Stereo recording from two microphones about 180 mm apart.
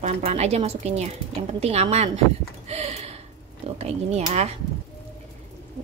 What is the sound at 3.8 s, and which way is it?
Speech, 40° right (ahead or behind).